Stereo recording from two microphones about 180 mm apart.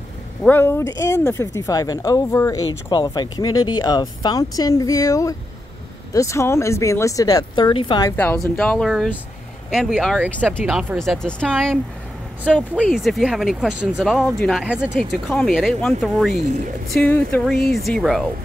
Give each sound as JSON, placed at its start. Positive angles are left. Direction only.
{"t": 0.4, "sound": "speech", "side_deg": 10}
{"t": 8.5, "sound": "speech", "side_deg": 5}
{"t": 12.8, "sound": "speech", "side_deg": 0}